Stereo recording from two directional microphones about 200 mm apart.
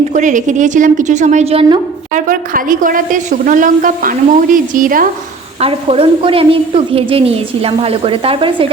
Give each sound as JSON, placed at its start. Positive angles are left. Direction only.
{"t": 0.1, "sound": "a woman's voice", "side_deg": -40}
{"t": 2.2, "sound": "a woman's voice", "side_deg": -45}
{"t": 5.5, "sound": "a woman's voice", "side_deg": -30}